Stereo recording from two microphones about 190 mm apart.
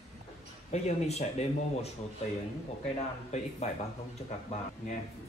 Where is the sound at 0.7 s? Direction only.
35° left (ahead or behind).